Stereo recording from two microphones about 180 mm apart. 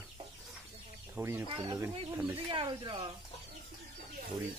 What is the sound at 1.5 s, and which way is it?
Speech, 30° right (ahead or behind).